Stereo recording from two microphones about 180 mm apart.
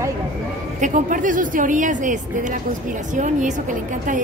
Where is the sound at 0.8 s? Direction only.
45° right (ahead or behind).